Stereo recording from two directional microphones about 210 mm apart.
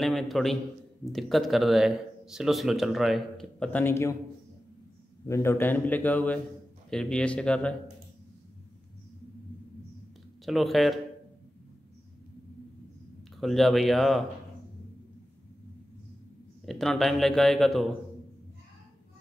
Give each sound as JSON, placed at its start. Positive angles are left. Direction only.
{"t": 0.0, "sound": "speech", "side_deg": 0}
{"t": 5.2, "sound": "a man's voice", "side_deg": 15}
{"t": 10.4, "sound": "speech", "side_deg": 0}
{"t": 13.4, "sound": "speech", "side_deg": 0}
{"t": 16.6, "sound": "speech", "side_deg": 0}